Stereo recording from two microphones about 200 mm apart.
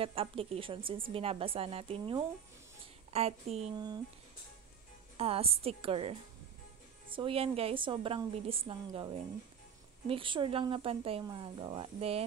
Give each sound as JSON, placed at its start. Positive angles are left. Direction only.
{"t": 0.0, "sound": "a woman's voice", "side_deg": -30}
{"t": 3.7, "sound": "speech", "side_deg": -20}
{"t": 5.1, "sound": "speech", "side_deg": -30}
{"t": 7.2, "sound": "speech", "side_deg": -25}